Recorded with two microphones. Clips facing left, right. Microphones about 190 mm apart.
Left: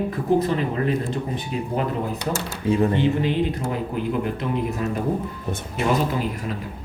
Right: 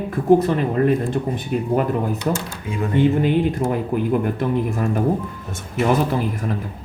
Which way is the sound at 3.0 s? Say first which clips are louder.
Right 4 dB; 50° right (ahead or behind).